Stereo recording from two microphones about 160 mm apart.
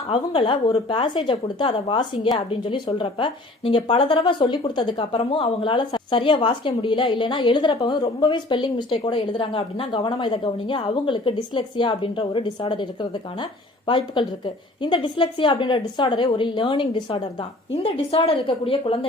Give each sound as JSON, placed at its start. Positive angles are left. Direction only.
{"t": 0.1, "sound": "a woman's voice", "side_deg": 30}